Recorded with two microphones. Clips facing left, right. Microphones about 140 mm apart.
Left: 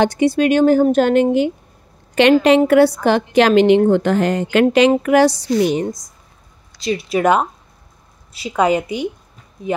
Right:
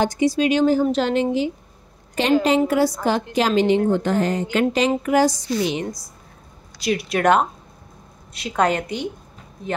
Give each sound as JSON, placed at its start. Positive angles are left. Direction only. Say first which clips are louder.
{"t": 0.0, "sound": "speech", "louder": "left 4 dB", "side_deg": 65}
{"t": 2.1, "sound": "a woman's voice", "louder": "left 6 dB", "side_deg": 70}
{"t": 7.1, "sound": "a woman's voice", "louder": "left 2 dB", "side_deg": 5}